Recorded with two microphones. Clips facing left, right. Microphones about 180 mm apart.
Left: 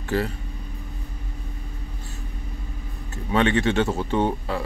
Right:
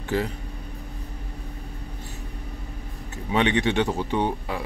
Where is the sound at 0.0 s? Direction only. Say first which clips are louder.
Left 1 dB; 15° right (ahead or behind).